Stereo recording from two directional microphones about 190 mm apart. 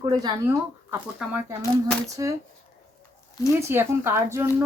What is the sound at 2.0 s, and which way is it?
Speech, 15° right (ahead or behind).